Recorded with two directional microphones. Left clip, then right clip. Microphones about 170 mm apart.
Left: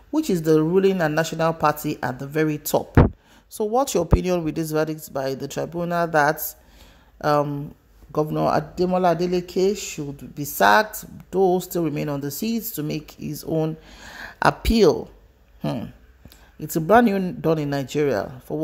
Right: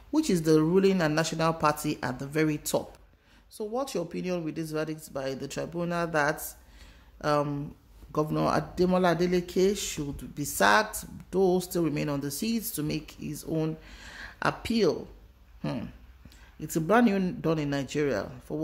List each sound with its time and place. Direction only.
0.1 s speech: 15° left (ahead or behind)
3.5 s speech: 40° left (ahead or behind)
15.6 s speech: 20° left (ahead or behind)